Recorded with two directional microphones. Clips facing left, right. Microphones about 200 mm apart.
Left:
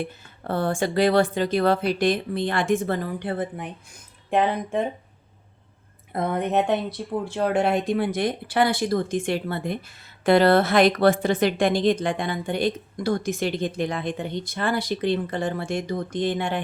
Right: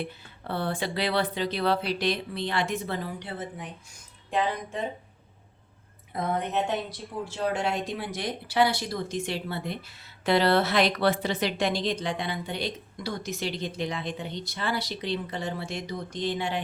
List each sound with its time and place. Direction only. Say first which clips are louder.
0.0 s speech: left 4 dB; 45° left (ahead or behind)
6.1 s speech: left 5 dB; 60° left (ahead or behind)